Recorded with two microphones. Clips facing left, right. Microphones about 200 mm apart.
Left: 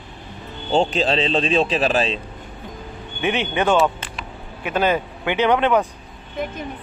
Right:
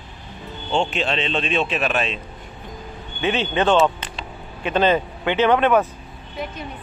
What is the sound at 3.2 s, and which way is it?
A man's voice, 15° left (ahead or behind).